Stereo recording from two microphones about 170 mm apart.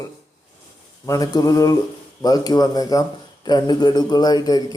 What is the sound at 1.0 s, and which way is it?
Speech, 20° left (ahead or behind).